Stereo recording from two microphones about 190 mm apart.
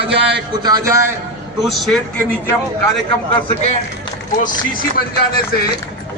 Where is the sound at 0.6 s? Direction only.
20° right (ahead or behind).